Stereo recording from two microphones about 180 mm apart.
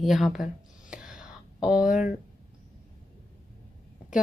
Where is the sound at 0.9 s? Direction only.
5° right (ahead or behind).